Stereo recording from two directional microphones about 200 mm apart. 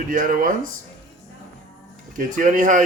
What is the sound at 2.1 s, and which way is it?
Speech, 40° right (ahead or behind).